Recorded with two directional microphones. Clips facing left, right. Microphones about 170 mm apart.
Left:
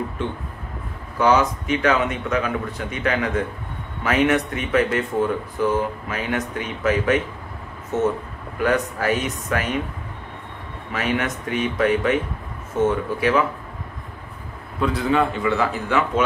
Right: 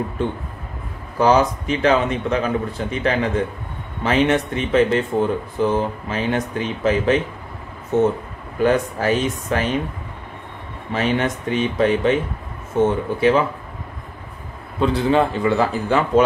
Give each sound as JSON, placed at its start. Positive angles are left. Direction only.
{"t": 1.1, "sound": "speech", "side_deg": -35}
{"t": 8.5, "sound": "speech", "side_deg": -30}
{"t": 10.9, "sound": "speech", "side_deg": -30}
{"t": 14.8, "sound": "speech", "side_deg": -30}